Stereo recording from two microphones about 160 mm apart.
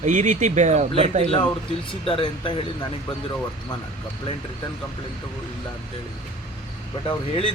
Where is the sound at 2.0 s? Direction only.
35° left (ahead or behind).